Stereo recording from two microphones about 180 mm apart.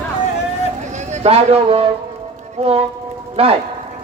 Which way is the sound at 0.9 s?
35° right (ahead or behind).